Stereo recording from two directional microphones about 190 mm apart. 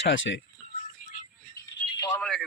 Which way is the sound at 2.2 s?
Centre (ahead or behind).